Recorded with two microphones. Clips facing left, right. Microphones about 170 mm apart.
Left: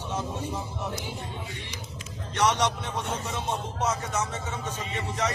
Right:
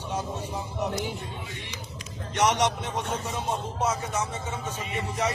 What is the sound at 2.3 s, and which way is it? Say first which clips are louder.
Speech: right 1 dB; 20° right (ahead or behind).